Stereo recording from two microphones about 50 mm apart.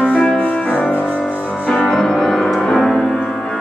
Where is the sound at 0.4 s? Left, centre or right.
Left.